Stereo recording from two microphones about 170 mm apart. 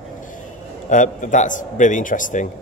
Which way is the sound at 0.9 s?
50° left (ahead or behind).